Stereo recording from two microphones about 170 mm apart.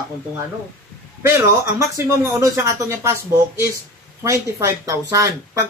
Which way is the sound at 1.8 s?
20° right (ahead or behind).